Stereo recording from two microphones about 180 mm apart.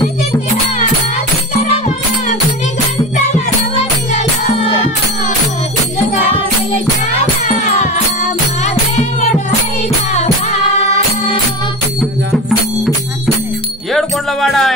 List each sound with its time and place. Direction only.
4.1 s music: 40° left (ahead or behind)
7.4 s music: 40° left (ahead or behind)
10.1 s music: 35° left (ahead or behind)
13.9 s music: centre (ahead or behind)